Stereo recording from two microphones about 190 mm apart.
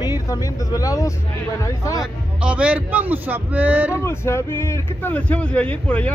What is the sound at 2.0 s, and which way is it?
A man's voice, 5° right (ahead or behind).